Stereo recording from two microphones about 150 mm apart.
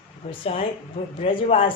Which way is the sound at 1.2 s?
40° left (ahead or behind).